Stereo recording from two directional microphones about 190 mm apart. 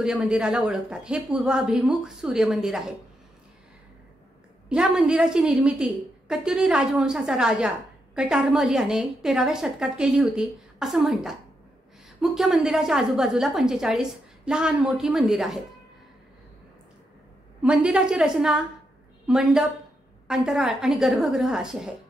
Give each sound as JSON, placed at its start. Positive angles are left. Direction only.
{"t": 0.0, "sound": "a woman's voice", "side_deg": -5}
{"t": 4.6, "sound": "a woman's voice", "side_deg": -5}
{"t": 17.6, "sound": "a woman's voice", "side_deg": -5}